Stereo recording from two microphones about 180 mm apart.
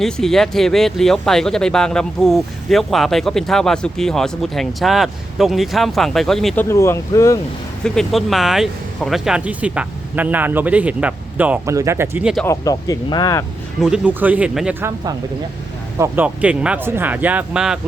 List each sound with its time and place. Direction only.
0.0 s speech: centre (ahead or behind)
6.7 s speech: 15° left (ahead or behind)
7.9 s speech: centre (ahead or behind)
12.5 s speech: 20° left (ahead or behind)
13.8 s speech: 5° right (ahead or behind)